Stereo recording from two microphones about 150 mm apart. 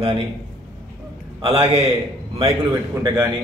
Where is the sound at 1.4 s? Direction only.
40° right (ahead or behind).